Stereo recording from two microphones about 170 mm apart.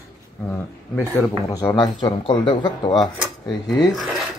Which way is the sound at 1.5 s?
20° left (ahead or behind).